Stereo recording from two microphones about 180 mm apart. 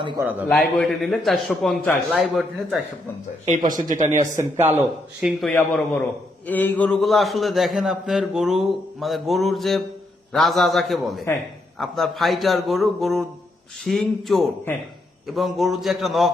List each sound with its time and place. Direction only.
0.2 s speech: 10° right (ahead or behind)
0.4 s a man's voice: centre (ahead or behind)
3.7 s speech: 45° right (ahead or behind)
4.4 s speech: 15° right (ahead or behind)
5.4 s a man's voice: 5° left (ahead or behind)